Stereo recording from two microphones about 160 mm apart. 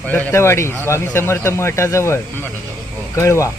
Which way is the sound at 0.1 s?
10° left (ahead or behind).